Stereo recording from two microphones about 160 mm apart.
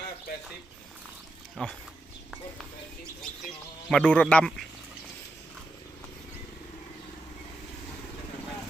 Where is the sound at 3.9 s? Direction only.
10° left (ahead or behind).